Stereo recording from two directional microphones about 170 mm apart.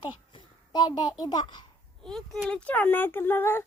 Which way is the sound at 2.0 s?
Centre (ahead or behind).